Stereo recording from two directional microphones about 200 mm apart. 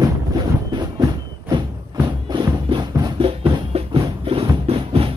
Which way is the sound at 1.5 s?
20° right (ahead or behind).